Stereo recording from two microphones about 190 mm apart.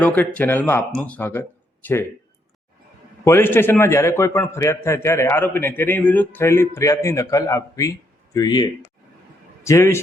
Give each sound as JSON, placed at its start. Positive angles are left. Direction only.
{"t": 0.0, "sound": "a man's voice", "side_deg": 10}
{"t": 3.2, "sound": "a man's voice", "side_deg": 10}